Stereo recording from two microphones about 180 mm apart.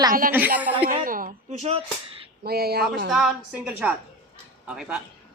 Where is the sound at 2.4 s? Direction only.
60° right (ahead or behind).